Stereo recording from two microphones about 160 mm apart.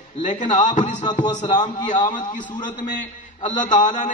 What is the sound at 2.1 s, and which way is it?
A man's voice, 55° left (ahead or behind).